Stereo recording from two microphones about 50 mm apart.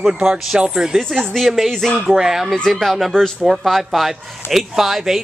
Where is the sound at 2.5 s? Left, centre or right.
Centre.